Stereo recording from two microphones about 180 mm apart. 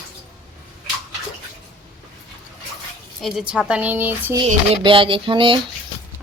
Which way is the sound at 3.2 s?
Centre (ahead or behind).